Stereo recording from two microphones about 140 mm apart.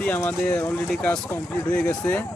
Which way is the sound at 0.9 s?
5° left (ahead or behind).